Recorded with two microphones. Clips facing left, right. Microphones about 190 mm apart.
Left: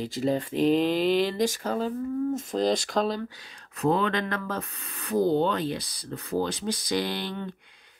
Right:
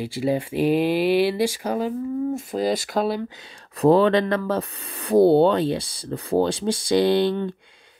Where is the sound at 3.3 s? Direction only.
25° right (ahead or behind).